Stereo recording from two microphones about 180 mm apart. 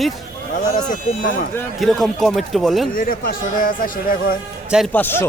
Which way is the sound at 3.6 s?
50° left (ahead or behind).